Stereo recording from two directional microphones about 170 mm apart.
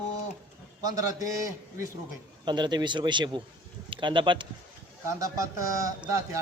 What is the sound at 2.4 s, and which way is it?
A man's voice, 25° right (ahead or behind).